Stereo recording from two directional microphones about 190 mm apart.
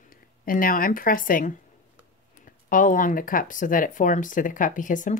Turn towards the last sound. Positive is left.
turn(degrees=45)  # may be behind; listen again after turning